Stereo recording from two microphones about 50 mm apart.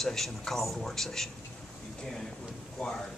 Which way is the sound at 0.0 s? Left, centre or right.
Centre.